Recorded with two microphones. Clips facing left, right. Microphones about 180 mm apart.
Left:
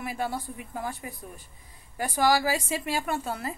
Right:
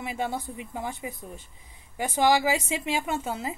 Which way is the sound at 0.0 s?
20° right (ahead or behind).